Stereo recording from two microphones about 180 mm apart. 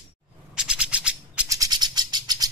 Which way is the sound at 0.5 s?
5° right (ahead or behind).